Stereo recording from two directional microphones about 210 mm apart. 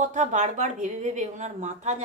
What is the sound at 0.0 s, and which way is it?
Speech, 35° right (ahead or behind).